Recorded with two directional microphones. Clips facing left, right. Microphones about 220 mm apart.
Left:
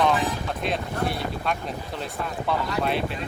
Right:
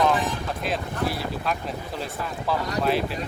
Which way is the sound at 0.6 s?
Centre (ahead or behind).